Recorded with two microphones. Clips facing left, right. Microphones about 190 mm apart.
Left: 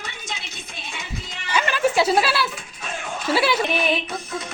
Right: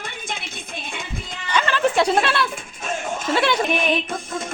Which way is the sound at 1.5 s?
10° left (ahead or behind).